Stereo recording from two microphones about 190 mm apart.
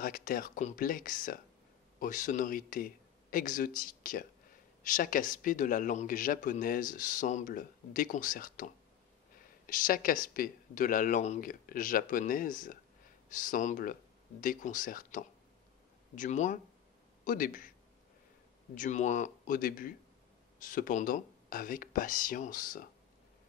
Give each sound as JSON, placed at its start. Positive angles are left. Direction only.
{"t": 0.0, "sound": "a man's voice", "side_deg": 45}
{"t": 18.8, "sound": "a man's voice", "side_deg": 40}